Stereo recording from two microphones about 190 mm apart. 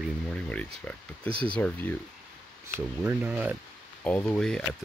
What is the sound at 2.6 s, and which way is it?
Speech, 10° right (ahead or behind).